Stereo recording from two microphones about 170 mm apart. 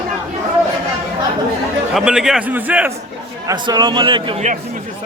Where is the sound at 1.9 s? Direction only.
5° right (ahead or behind).